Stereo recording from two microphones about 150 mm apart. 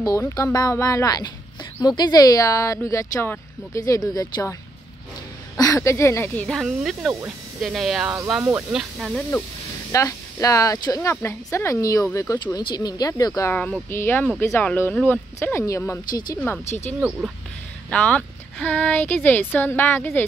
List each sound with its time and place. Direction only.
0.0 s speech: 20° left (ahead or behind)
5.6 s speech: 20° left (ahead or behind); by 9.2 s 5° right (ahead or behind)
9.9 s speech: 20° left (ahead or behind)
17.8 s speech: 10° left (ahead or behind)